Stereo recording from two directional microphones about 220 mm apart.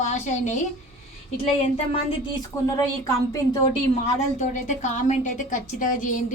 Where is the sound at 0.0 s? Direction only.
35° left (ahead or behind).